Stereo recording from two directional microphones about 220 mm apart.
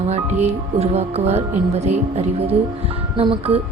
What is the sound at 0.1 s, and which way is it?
Speech, 30° right (ahead or behind).